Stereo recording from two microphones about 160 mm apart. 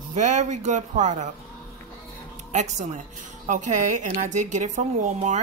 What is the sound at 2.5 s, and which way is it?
Speech, 45° right (ahead or behind).